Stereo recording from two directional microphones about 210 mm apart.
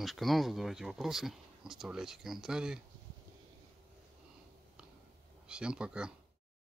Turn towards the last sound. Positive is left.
turn(degrees=-5)  # may be behind; listen again after turning